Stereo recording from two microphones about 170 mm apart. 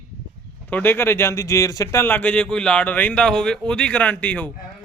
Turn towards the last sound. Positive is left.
turn(degrees=10)  # may be behind; listen again after turning